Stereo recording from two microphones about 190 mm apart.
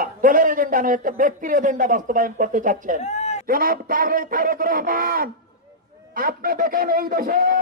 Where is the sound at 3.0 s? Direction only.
35° left (ahead or behind).